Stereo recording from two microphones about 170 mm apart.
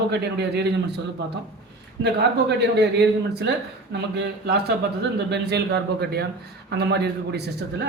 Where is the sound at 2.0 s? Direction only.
90° right.